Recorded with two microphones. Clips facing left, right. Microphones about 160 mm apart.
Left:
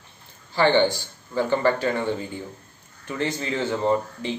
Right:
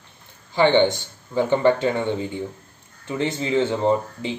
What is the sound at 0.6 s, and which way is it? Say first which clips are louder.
Speech: right 2 dB; 20° right (ahead or behind).